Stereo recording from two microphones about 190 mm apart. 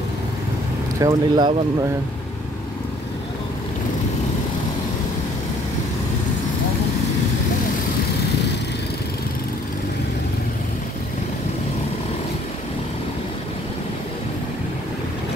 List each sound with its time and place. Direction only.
0.9 s speech: 20° right (ahead or behind)